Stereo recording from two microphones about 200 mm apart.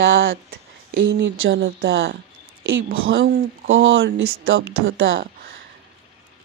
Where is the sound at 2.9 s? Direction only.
90° right.